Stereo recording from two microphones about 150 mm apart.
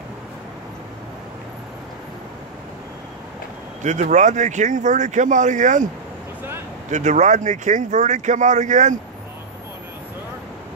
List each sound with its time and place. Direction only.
3.8 s speech: 55° right (ahead or behind)
6.9 s speech: 50° right (ahead or behind)